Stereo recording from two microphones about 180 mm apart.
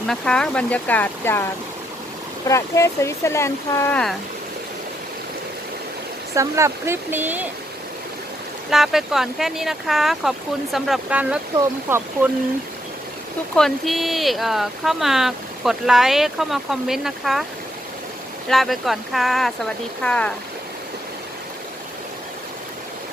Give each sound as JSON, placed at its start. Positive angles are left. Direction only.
{"t": 0.1, "sound": "speech", "side_deg": 5}
{"t": 2.5, "sound": "speech", "side_deg": 15}
{"t": 6.3, "sound": "speech", "side_deg": -15}
{"t": 8.7, "sound": "speech", "side_deg": 0}
{"t": 13.6, "sound": "speech", "side_deg": 0}
{"t": 18.4, "sound": "speech", "side_deg": 0}